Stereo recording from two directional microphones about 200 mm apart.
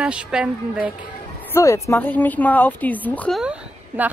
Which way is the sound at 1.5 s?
15° left (ahead or behind).